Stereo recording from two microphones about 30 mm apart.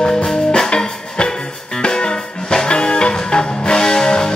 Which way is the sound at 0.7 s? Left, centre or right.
Left.